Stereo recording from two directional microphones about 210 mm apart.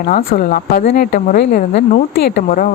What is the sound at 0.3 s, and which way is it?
Speech, 40° left (ahead or behind).